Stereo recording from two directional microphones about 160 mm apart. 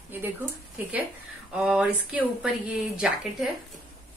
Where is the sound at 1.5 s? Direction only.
5° right (ahead or behind).